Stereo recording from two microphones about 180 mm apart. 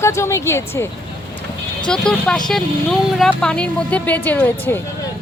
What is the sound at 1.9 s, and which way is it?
Speech, 5° left (ahead or behind).